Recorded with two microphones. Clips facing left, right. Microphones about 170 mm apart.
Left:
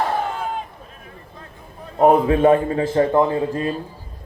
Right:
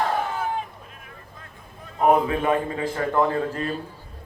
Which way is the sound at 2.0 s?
30° left (ahead or behind).